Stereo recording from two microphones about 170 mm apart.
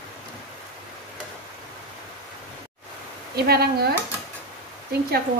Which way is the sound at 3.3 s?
65° right (ahead or behind).